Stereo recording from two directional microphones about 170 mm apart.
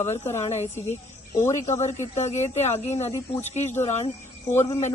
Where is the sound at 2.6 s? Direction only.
40° left (ahead or behind).